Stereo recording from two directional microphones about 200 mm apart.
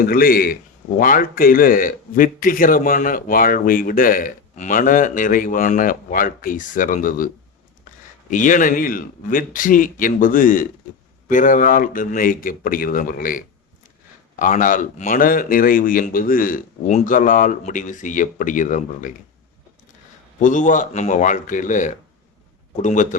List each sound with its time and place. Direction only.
0.0 s speech: 45° left (ahead or behind)
8.3 s speech: 40° left (ahead or behind)
20.4 s speech: 40° left (ahead or behind)